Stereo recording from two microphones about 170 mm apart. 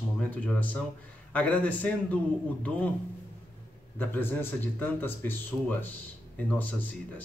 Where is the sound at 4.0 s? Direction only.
10° left (ahead or behind).